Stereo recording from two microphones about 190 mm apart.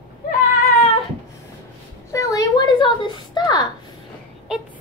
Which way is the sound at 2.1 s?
20° left (ahead or behind).